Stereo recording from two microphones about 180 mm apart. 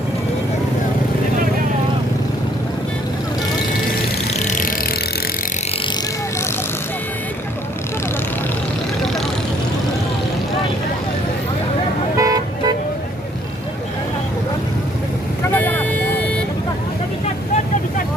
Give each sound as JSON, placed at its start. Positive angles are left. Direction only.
{"t": 4.4, "sound": "vehicle", "side_deg": 45}
{"t": 12.1, "sound": "vehicle", "side_deg": -20}
{"t": 15.5, "sound": "vehicle", "side_deg": 10}
{"t": 17.2, "sound": "vehicle", "side_deg": 40}